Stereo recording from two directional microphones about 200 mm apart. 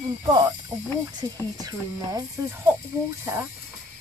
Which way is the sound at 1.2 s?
20° right (ahead or behind).